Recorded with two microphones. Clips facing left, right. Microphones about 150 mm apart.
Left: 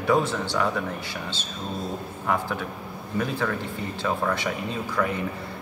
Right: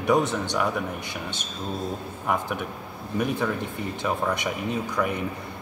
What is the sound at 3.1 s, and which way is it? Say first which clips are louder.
Speech: right 1 dB; 15° right (ahead or behind).